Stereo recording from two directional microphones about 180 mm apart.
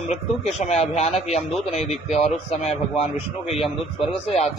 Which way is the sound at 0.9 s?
35° left (ahead or behind).